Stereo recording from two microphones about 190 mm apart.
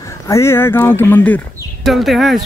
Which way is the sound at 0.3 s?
15° left (ahead or behind).